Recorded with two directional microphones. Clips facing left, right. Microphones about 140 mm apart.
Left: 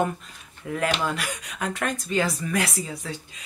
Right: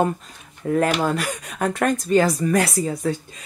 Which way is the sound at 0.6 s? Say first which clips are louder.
Right 6 dB; 45° right (ahead or behind).